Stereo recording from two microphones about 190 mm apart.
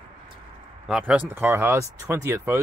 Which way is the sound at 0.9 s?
5° right (ahead or behind).